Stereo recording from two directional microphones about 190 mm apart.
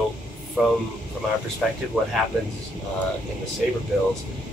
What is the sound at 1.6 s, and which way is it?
Speech, centre (ahead or behind).